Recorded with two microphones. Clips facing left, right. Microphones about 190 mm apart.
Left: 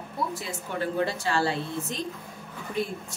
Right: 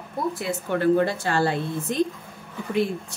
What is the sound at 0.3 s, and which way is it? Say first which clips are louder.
A woman's voice: right 7 dB; 55° right (ahead or behind).